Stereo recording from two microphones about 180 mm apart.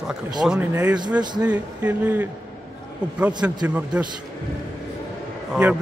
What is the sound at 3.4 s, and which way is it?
Speech, 5° right (ahead or behind).